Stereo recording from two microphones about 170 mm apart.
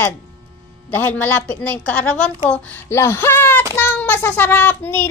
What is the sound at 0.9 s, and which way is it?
Speech, 10° left (ahead or behind).